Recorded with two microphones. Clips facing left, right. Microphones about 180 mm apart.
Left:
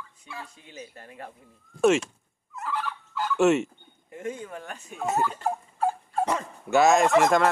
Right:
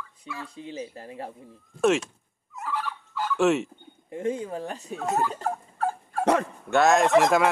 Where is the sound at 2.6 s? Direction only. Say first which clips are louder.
Even; 5° right (ahead or behind).